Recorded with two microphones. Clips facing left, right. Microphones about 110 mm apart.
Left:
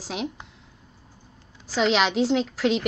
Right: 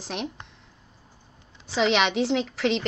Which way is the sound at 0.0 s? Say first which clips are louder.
Left 2 dB; centre (ahead or behind).